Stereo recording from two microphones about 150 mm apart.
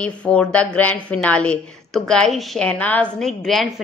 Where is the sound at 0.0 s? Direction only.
10° left (ahead or behind).